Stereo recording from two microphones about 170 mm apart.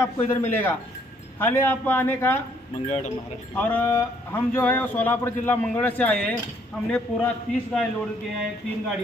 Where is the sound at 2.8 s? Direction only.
45° left (ahead or behind).